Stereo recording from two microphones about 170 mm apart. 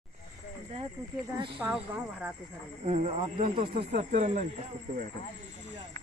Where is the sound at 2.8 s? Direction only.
45° right (ahead or behind).